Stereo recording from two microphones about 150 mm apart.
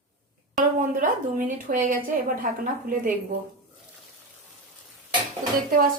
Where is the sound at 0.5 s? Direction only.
60° right (ahead or behind).